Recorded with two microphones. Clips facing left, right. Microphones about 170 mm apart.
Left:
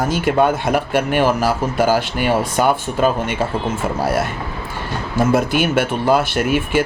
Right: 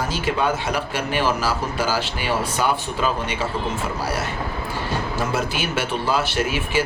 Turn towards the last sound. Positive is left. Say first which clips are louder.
# left 5 dB
turn(degrees=55)  # may be behind; listen again after turning